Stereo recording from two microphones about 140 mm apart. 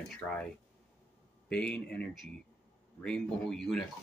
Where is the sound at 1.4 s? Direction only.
5° left (ahead or behind).